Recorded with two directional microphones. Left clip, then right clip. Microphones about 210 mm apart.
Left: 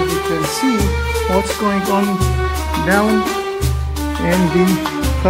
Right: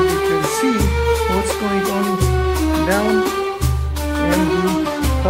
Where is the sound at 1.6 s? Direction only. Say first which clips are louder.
Left 3 dB; 15° left (ahead or behind).